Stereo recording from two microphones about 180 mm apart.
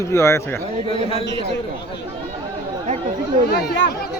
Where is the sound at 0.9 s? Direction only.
35° left (ahead or behind).